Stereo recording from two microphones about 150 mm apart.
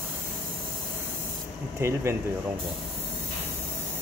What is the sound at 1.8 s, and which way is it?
Speech, 15° right (ahead or behind).